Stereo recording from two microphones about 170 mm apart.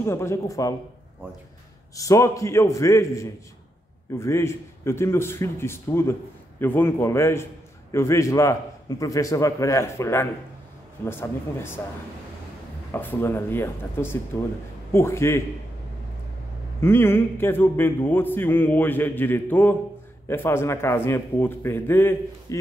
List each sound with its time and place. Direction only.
0.0 s a man's voice: 15° left (ahead or behind)
2.0 s a man's voice: 20° left (ahead or behind)
12.9 s a man's voice: 10° left (ahead or behind)
16.8 s a man's voice: 15° left (ahead or behind)